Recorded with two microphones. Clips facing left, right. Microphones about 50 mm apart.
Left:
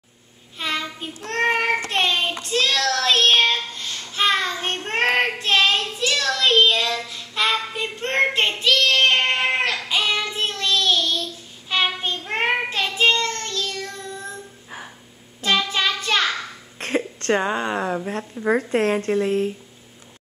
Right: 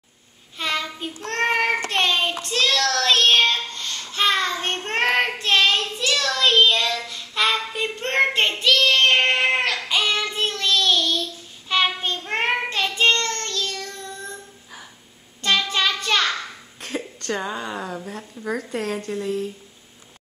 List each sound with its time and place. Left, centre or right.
0.6 s child singing: centre
15.4 s child singing: centre
16.8 s a woman's voice: left